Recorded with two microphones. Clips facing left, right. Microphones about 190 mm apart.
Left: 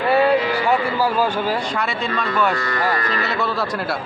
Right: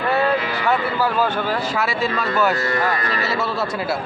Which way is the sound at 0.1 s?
10° left (ahead or behind).